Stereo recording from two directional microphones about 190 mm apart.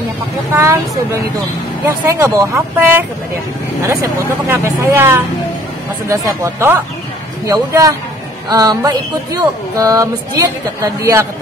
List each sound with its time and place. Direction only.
0.5 s speech: 15° right (ahead or behind)
1.9 s speech: 15° right (ahead or behind)